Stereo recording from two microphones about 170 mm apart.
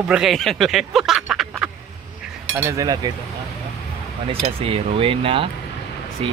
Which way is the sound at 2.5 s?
20° right (ahead or behind).